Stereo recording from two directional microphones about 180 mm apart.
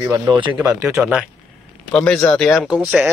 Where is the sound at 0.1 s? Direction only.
20° right (ahead or behind).